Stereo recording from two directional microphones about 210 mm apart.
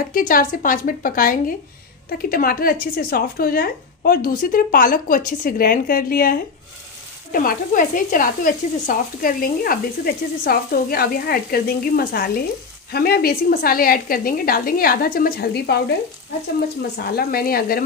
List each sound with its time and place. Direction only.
0.1 s a woman's voice: 40° left (ahead or behind)
17.1 s speech: 45° left (ahead or behind)